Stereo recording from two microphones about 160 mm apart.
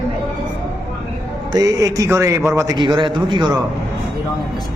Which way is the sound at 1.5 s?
20° right (ahead or behind).